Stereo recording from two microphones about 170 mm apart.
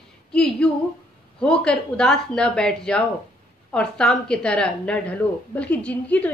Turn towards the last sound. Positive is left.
turn(degrees=5)  # may be behind; listen again after turning